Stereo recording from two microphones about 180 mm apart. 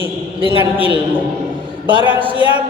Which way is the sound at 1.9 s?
25° right (ahead or behind).